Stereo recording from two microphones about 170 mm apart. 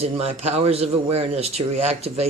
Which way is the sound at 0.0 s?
40° right (ahead or behind).